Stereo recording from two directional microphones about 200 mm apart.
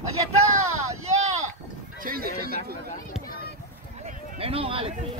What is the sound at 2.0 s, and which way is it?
Neigh, 50° right (ahead or behind).